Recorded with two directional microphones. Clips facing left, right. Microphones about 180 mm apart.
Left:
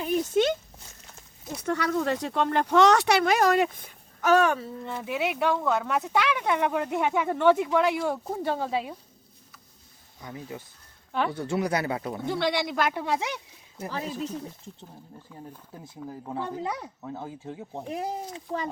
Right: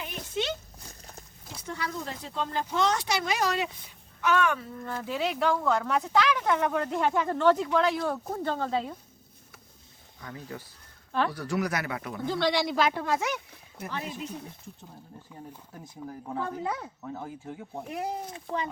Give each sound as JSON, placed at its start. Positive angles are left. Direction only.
{"t": 0.0, "sound": "a sound", "side_deg": 45}
{"t": 1.6, "sound": "speech", "side_deg": 65}
{"t": 4.9, "sound": "speech", "side_deg": 5}
{"t": 10.2, "sound": "speech", "side_deg": 20}
{"t": 12.5, "sound": "a man's voice", "side_deg": 0}
{"t": 12.9, "sound": "speech", "side_deg": 15}
{"t": 13.2, "sound": "speech", "side_deg": 30}
{"t": 16.0, "sound": "speech", "side_deg": 15}
{"t": 17.2, "sound": "speech", "side_deg": 25}